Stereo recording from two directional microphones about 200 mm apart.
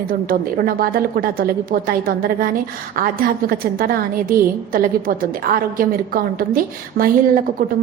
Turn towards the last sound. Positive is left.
turn(degrees=-45)  # may be behind; listen again after turning